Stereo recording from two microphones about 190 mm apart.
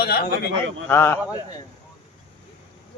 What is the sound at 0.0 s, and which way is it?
Speech, 55° left (ahead or behind).